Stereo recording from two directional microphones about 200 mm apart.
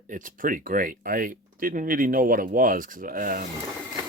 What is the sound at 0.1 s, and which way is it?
Speech, 40° right (ahead or behind).